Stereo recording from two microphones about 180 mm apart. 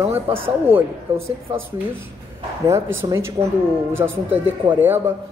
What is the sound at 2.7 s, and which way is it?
A man's voice, 15° right (ahead or behind).